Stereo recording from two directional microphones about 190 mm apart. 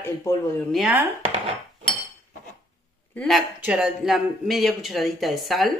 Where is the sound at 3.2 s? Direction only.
Centre (ahead or behind).